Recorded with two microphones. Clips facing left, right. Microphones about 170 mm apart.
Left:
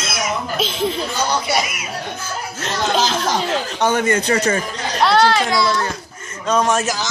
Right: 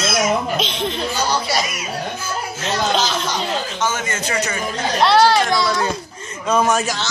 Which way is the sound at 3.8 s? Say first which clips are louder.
Left 8 dB; 65° left (ahead or behind).